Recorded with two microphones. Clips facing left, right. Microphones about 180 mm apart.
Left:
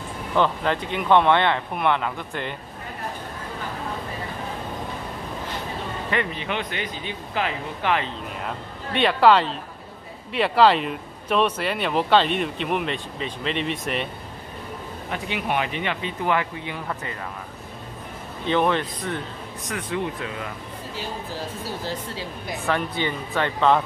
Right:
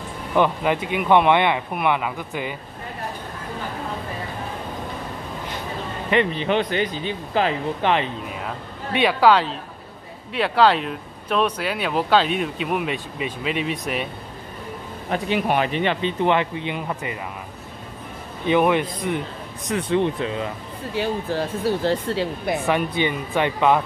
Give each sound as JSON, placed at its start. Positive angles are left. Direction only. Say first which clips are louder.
{"t": 0.3, "sound": "speech", "louder": "right 2 dB", "side_deg": -10}
{"t": 6.0, "sound": "a man's voice", "louder": "right 7 dB", "side_deg": -20}
{"t": 6.4, "sound": "speech", "louder": "right 7 dB", "side_deg": -35}
{"t": 8.4, "sound": "speech", "louder": "right 1 dB", "side_deg": -5}
{"t": 15.0, "sound": "speech", "louder": "right 6 dB", "side_deg": -40}
{"t": 18.5, "sound": "speech", "louder": "right 3 dB", "side_deg": -10}
{"t": 19.7, "sound": "speech", "louder": "right 7 dB", "side_deg": -25}
{"t": 20.9, "sound": "speech", "louder": "right 10 dB", "side_deg": -65}
{"t": 22.7, "sound": "speech", "louder": "right 1 dB", "side_deg": -15}